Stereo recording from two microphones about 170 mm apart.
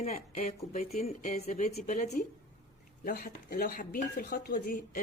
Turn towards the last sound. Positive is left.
turn(degrees=50)  # may be behind; listen again after turning